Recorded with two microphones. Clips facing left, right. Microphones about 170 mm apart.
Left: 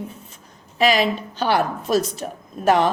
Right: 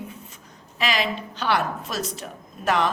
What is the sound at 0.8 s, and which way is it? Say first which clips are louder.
A woman's voice: left 7 dB; 40° left (ahead or behind).